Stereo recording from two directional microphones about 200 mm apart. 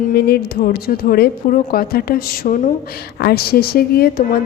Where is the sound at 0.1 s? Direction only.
50° left (ahead or behind).